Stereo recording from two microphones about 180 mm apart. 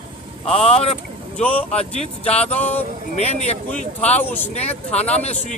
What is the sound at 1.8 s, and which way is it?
Speech, 35° left (ahead or behind).